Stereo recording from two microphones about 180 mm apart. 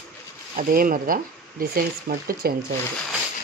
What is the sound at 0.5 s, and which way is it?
Speech, 50° right (ahead or behind).